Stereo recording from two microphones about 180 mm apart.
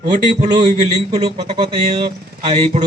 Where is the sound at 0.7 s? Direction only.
35° right (ahead or behind).